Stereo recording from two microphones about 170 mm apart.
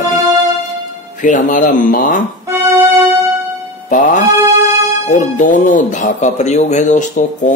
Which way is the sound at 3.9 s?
50° left (ahead or behind).